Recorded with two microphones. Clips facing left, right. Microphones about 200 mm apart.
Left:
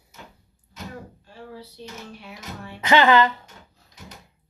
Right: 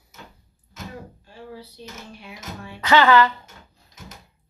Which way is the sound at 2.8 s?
20° left (ahead or behind).